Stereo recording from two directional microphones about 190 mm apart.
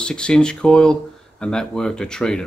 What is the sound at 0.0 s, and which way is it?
Speech, 5° left (ahead or behind).